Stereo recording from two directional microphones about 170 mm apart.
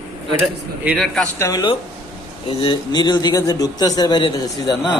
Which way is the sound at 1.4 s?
20° left (ahead or behind).